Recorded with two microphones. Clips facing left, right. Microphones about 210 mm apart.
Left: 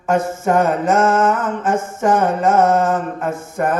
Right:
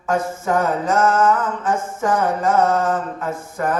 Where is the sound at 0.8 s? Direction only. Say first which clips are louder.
Left 2 dB; 25° left (ahead or behind).